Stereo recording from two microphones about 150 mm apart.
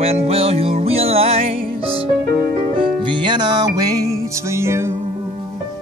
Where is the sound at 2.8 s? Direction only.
35° right (ahead or behind); by 4.9 s 20° right (ahead or behind).